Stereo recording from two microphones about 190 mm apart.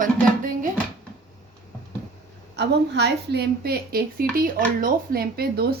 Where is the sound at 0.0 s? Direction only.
45° right (ahead or behind).